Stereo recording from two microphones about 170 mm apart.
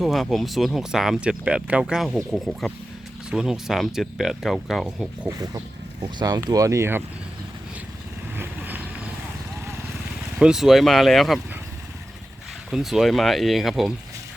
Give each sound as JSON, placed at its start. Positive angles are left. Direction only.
{"t": 0.0, "sound": "speech", "side_deg": 0}
{"t": 6.1, "sound": "speech", "side_deg": -20}
{"t": 8.4, "sound": "vehicle", "side_deg": -10}
{"t": 10.3, "sound": "speech", "side_deg": -5}
{"t": 12.7, "sound": "speech", "side_deg": 0}